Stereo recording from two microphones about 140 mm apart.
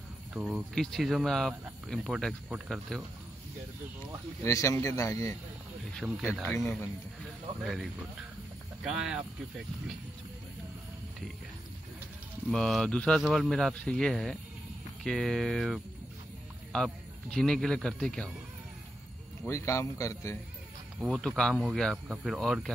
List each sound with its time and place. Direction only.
0.3 s speech: 10° right (ahead or behind)
0.7 s speech: centre (ahead or behind)
4.5 s speech: 20° left (ahead or behind)
6.0 s speech: 10° right (ahead or behind)
7.6 s speech: centre (ahead or behind)
12.4 s speech: 5° left (ahead or behind)
19.4 s speech: 20° left (ahead or behind)
21.0 s speech: centre (ahead or behind)